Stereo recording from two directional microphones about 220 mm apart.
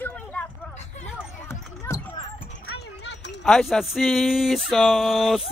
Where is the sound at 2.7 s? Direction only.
50° left (ahead or behind).